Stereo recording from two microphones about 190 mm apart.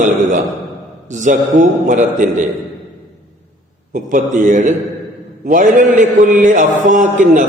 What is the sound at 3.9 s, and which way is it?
A man's voice, 45° right (ahead or behind).